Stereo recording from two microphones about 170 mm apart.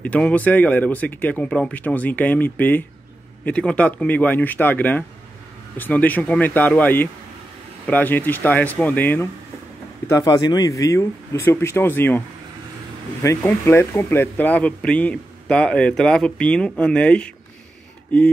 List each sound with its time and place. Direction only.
0.0 s speech: 10° left (ahead or behind)
13.2 s speech: 15° left (ahead or behind)